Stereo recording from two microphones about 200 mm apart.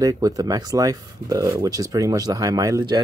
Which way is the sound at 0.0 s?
15° right (ahead or behind).